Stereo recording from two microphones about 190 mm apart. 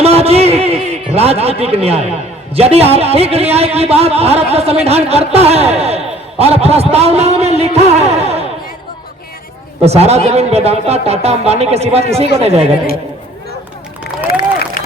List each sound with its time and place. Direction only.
0.0 s a sound: 35° right (ahead or behind)
2.6 s a man's voice: 30° right (ahead or behind)
9.8 s a man's voice: 35° right (ahead or behind)